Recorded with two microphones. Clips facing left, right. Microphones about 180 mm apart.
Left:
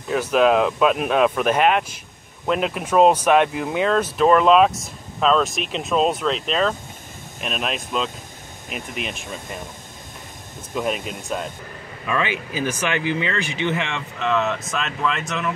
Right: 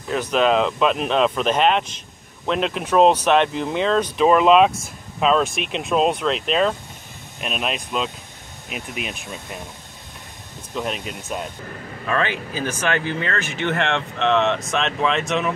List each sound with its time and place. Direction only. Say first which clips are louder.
0.1 s speech: left 2 dB; 5° left (ahead or behind)
10.7 s speech: left 2 dB; 5° left (ahead or behind)
12.1 s speech: right 1 dB; 10° left (ahead or behind)
13.4 s speech: right 1 dB; 50° right (ahead or behind)
14.1 s speech: right 2 dB; 5° left (ahead or behind)